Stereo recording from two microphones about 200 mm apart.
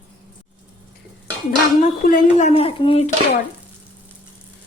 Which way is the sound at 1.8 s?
40° left (ahead or behind).